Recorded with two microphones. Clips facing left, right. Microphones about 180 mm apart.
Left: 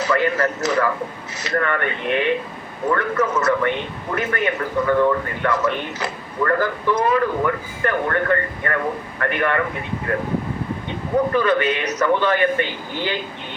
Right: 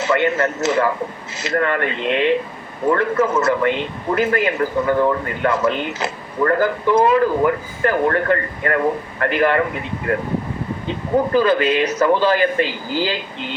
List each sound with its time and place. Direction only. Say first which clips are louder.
0.0 s speech: right 2 dB; 25° right (ahead or behind)
11.3 s speech: right 3 dB; 30° right (ahead or behind)
12.6 s speech: right 5 dB; 90° right